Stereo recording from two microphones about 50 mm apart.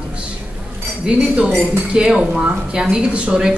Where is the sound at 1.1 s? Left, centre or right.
Right.